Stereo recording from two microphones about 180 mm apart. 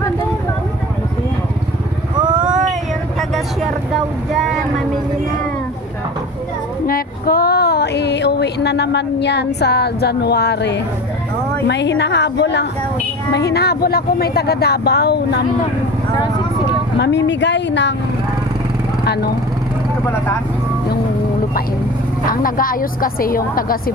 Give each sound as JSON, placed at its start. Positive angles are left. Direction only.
{"t": 6.9, "sound": "a sound", "side_deg": 55}
{"t": 11.6, "sound": "a woman's voice", "side_deg": 75}
{"t": 17.0, "sound": "a woman's voice", "side_deg": 75}
{"t": 22.2, "sound": "a woman's voice", "side_deg": 50}